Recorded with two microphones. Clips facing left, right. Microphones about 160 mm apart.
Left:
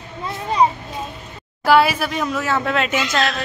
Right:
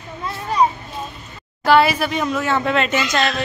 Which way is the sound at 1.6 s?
5° left (ahead or behind).